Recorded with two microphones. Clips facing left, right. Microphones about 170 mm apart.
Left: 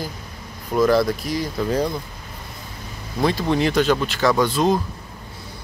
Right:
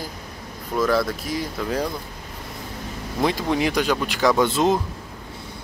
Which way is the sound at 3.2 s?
15° right (ahead or behind).